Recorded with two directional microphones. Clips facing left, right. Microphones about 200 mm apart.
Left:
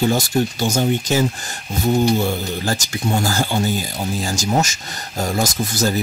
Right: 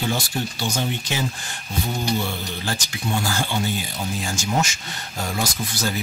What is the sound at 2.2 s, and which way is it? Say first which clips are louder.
Speech: left 7 dB; 40° left (ahead or behind).